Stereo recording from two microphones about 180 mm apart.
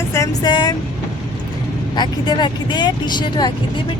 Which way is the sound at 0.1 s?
20° left (ahead or behind).